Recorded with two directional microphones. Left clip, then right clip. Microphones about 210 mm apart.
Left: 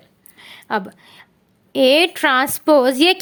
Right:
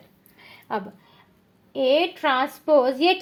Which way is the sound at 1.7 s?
40° left (ahead or behind).